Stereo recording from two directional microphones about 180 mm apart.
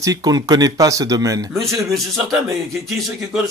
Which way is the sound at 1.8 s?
Centre (ahead or behind).